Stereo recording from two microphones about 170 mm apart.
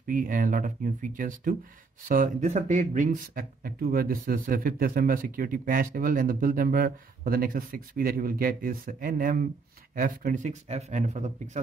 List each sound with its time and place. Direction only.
0.0 s speech: 55° right (ahead or behind)